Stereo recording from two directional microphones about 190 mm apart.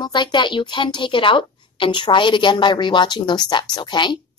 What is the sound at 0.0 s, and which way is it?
A woman's voice, 25° left (ahead or behind).